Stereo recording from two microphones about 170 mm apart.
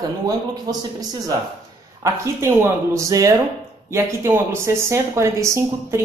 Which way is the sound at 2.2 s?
15° right (ahead or behind).